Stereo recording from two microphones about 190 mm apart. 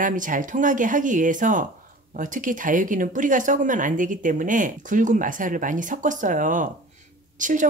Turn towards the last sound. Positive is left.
turn(degrees=-45)  # may be behind; listen again after turning